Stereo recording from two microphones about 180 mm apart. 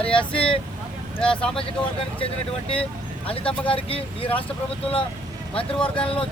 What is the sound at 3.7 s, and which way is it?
Speech, 30° left (ahead or behind).